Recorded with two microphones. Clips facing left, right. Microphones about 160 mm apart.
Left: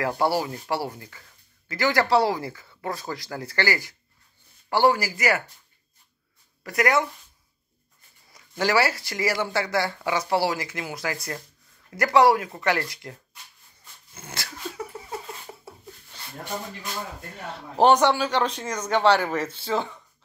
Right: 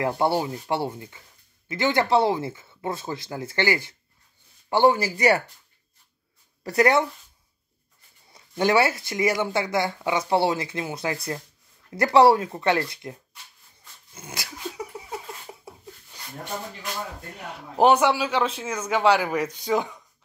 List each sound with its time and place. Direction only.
0.0 s speech: 20° right (ahead or behind)
6.6 s speech: 30° right (ahead or behind)
8.3 s speech: 25° right (ahead or behind)
14.1 s dog: 15° right (ahead or behind)
15.7 s a sound: 15° right (ahead or behind)
17.7 s a man's voice: 10° right (ahead or behind)